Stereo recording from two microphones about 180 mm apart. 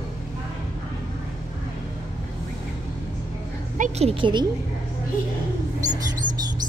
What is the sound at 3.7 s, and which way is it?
Speech, 40° right (ahead or behind).